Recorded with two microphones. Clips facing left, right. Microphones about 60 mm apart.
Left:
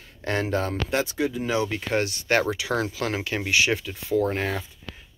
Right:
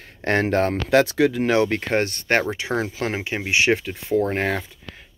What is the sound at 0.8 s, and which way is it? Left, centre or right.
Speech, right.